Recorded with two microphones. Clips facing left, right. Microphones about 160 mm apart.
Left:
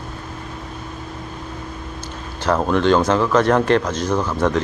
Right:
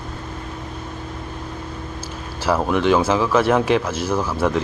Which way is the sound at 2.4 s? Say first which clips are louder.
Left 1 dB; 5° right (ahead or behind).